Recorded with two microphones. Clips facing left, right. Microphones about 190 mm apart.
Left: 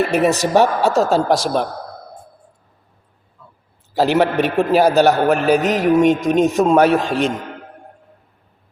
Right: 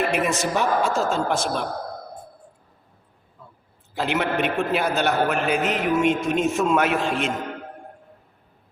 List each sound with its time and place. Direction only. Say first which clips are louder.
0.0 s a man's voice: left 7 dB; 40° left (ahead or behind)
0.5 s speech: left 7 dB; 70° left (ahead or behind)
1.1 s a man's voice: left 8 dB; 35° left (ahead or behind)
3.9 s a man's voice: left 8 dB; 40° left (ahead or behind)